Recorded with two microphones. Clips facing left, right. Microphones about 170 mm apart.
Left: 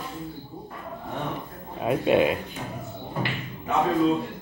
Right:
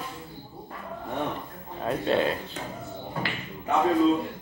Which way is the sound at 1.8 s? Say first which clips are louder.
Left 4 dB; 15° left (ahead or behind).